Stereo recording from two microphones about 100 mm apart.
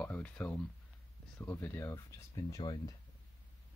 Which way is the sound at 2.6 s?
50° left (ahead or behind).